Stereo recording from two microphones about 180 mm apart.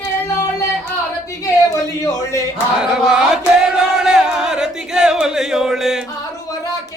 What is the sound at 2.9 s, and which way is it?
Chant, 5° right (ahead or behind).